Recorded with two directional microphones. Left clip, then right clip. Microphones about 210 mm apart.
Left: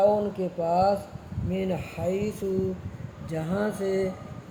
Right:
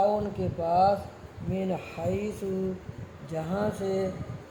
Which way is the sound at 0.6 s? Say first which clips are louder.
Even; 20° left (ahead or behind).